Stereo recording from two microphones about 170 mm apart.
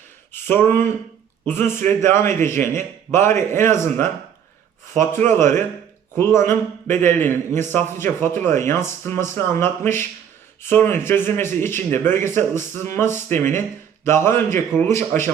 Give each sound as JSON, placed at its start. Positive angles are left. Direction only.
{"t": 0.3, "sound": "a man's voice", "side_deg": 15}